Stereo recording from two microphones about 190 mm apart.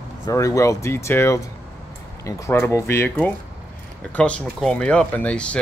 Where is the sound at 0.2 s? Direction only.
15° left (ahead or behind).